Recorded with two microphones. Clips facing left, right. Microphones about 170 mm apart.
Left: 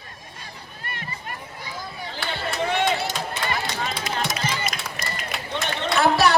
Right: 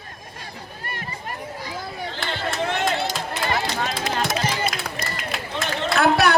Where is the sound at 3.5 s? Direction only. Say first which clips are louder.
Right 6 dB; 45° right (ahead or behind).